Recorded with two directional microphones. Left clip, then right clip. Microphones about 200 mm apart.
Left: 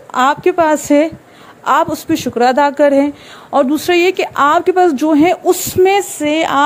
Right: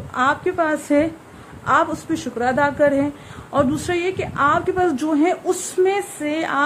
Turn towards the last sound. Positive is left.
turn(degrees=35)  # may be behind; listen again after turning